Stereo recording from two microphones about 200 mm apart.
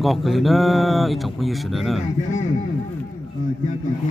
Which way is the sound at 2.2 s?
35° left (ahead or behind).